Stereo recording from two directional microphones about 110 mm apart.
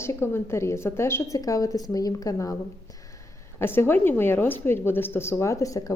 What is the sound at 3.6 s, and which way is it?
Speech, 20° left (ahead or behind).